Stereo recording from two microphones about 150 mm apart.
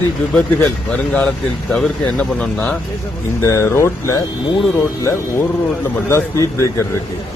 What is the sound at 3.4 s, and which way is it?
Speech, 20° left (ahead or behind).